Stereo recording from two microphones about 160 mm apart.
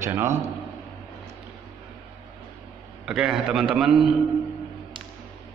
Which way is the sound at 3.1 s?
5° right (ahead or behind).